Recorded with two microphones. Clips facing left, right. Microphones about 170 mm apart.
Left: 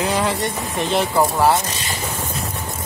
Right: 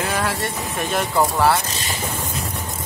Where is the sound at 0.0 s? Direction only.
15° left (ahead or behind).